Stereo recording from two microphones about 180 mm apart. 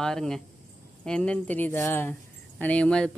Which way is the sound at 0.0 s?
5° left (ahead or behind).